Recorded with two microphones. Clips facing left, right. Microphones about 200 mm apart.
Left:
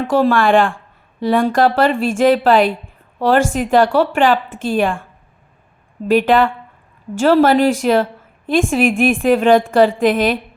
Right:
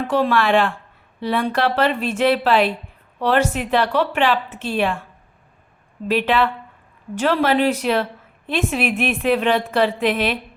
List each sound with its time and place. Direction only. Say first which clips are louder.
0.1 s a woman's voice: left 5 dB; 45° left (ahead or behind)
6.1 s a woman's voice: left 6 dB; 45° left (ahead or behind)